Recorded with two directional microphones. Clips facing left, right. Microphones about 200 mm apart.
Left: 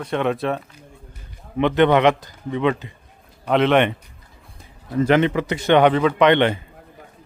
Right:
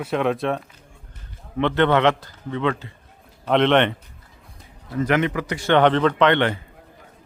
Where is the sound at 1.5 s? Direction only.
15° left (ahead or behind).